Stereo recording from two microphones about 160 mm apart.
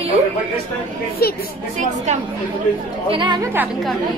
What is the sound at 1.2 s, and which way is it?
Speech, 75° left (ahead or behind).